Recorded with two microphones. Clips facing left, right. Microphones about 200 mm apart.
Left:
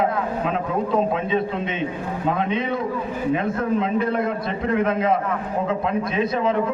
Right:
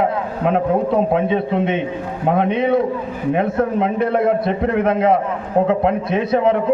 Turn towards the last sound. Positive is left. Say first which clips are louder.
# right 5 dB
turn(degrees=-65)  # may be behind; listen again after turning